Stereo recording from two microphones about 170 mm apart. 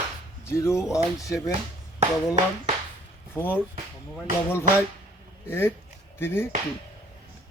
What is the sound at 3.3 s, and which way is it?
Speech, 10° left (ahead or behind).